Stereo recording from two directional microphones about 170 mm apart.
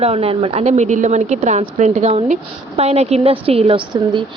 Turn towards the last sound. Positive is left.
turn(degrees=-30)  # may be behind; listen again after turning